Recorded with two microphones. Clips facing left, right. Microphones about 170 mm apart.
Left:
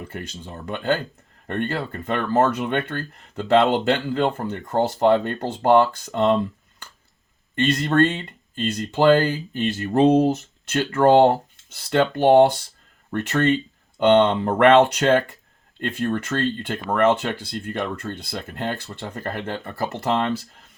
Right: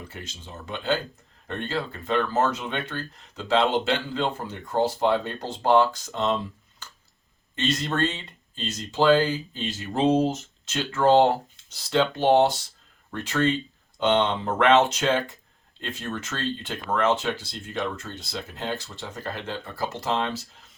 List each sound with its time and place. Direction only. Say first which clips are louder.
0.1 s speech: left 6 dB; 55° left (ahead or behind)
7.5 s speech: left 7 dB; 55° left (ahead or behind)